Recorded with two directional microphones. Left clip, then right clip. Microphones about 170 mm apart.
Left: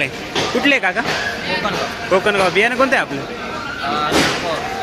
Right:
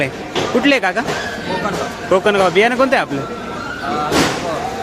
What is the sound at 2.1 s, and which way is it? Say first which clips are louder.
Speech: right 2 dB; 20° right (ahead or behind).